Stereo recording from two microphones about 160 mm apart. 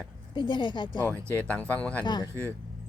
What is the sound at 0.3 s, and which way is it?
Speech, 30° left (ahead or behind).